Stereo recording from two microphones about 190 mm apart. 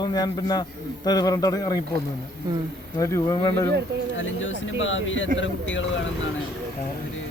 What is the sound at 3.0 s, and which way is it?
Speech, 20° left (ahead or behind).